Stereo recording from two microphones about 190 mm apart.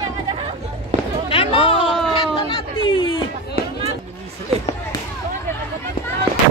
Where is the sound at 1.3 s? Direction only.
30° left (ahead or behind).